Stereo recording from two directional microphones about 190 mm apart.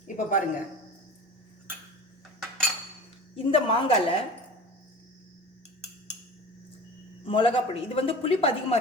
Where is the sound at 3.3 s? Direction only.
30° left (ahead or behind).